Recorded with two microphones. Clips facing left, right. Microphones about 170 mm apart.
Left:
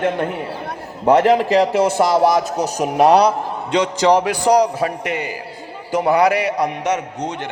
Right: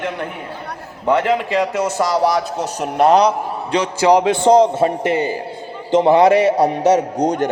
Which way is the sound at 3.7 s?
5° right (ahead or behind).